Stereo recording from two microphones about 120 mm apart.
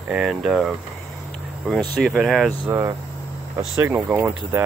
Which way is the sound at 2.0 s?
5° left (ahead or behind).